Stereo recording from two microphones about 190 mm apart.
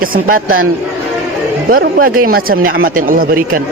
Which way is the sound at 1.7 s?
50° right (ahead or behind).